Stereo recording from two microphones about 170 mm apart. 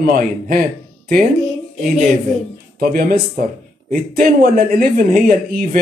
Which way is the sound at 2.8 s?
60° right (ahead or behind).